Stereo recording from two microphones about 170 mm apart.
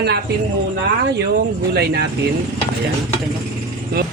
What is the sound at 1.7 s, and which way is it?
Speech, 70° right (ahead or behind).